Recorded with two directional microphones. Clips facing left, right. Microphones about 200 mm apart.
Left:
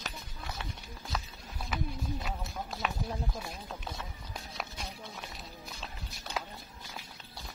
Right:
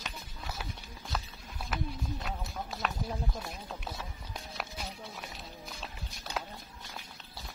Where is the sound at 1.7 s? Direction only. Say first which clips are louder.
Left 1 dB; centre (ahead or behind).